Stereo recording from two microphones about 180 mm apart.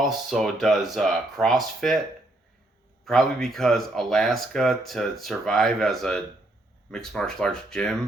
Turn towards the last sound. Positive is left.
turn(degrees=5)  # may be behind; listen again after turning